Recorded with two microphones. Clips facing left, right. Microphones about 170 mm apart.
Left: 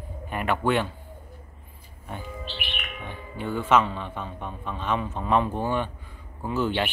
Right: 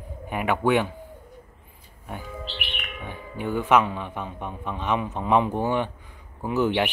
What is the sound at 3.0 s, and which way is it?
A man's voice, 15° right (ahead or behind).